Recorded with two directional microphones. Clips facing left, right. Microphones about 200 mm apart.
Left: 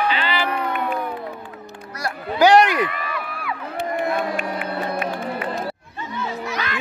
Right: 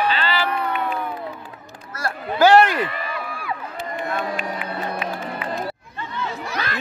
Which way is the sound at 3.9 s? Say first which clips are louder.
Left 3 dB; 50° left (ahead or behind).